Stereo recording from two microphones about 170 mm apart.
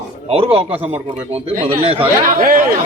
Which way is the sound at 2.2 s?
55° right (ahead or behind).